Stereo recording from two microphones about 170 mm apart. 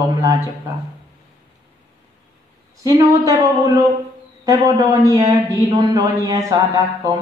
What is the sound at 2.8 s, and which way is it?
A man's voice, 25° right (ahead or behind).